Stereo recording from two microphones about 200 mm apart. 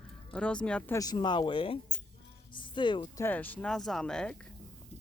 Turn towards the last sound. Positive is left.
turn(degrees=5)  # may be behind; listen again after turning